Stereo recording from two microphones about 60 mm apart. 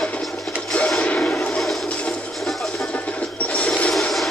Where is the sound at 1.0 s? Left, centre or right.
Left.